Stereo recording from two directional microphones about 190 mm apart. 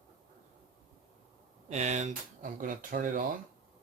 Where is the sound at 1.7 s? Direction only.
35° right (ahead or behind).